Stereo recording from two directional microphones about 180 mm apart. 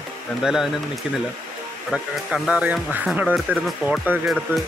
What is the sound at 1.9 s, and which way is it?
Speech, 5° right (ahead or behind).